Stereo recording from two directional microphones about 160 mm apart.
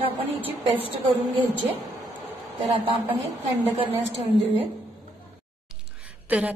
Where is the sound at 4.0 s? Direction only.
40° right (ahead or behind).